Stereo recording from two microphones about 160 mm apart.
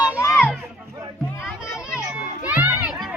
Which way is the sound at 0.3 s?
5° right (ahead or behind).